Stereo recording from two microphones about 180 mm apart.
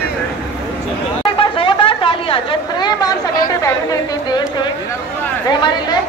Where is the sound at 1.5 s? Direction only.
30° left (ahead or behind).